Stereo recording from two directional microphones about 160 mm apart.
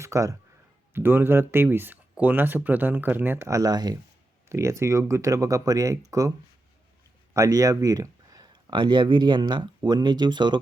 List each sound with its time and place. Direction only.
0.0 s speech: 20° right (ahead or behind)
7.3 s speech: 20° right (ahead or behind)